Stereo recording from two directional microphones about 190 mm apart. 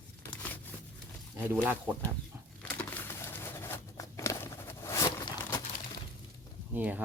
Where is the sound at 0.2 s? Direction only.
10° left (ahead or behind).